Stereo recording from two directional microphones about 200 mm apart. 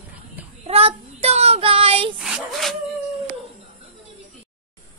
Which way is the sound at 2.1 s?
Centre (ahead or behind).